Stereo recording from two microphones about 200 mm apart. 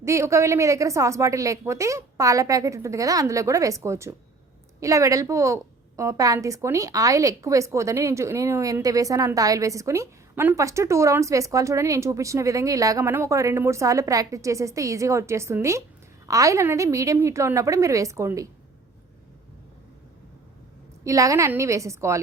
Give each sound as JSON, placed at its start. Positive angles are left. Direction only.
{"t": 0.0, "sound": "a woman's voice", "side_deg": -15}
{"t": 21.0, "sound": "a woman's voice", "side_deg": -15}